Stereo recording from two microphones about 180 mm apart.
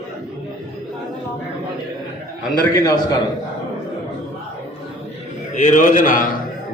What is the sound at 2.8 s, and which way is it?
Speech, 20° left (ahead or behind).